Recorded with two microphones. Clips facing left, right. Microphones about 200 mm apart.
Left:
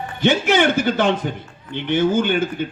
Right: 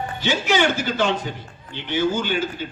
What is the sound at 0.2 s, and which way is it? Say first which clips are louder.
A man's voice: left 5 dB; 55° left (ahead or behind).